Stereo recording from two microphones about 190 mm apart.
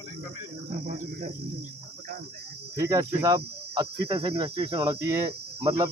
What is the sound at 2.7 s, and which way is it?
Speech, 20° right (ahead or behind).